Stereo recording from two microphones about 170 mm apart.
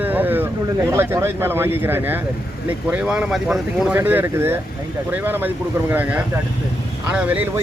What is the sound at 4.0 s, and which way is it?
Speech, 15° right (ahead or behind).